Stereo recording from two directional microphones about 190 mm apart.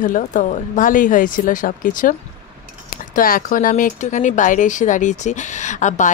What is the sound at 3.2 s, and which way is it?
Speech, 45° left (ahead or behind).